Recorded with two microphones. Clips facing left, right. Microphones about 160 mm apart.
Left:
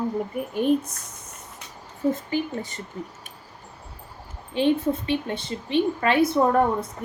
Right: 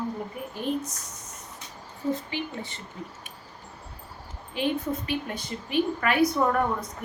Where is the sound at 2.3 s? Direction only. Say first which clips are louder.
Left 6 dB; 45° left (ahead or behind).